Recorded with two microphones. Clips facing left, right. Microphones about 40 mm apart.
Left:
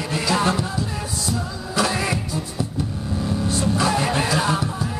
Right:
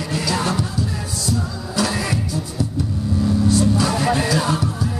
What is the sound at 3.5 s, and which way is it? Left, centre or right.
Music, centre.